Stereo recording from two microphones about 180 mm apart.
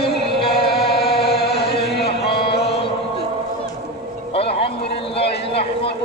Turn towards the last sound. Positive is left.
turn(degrees=30)  # may be behind; listen again after turning